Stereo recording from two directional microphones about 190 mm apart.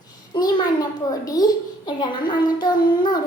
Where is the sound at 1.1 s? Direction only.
20° left (ahead or behind).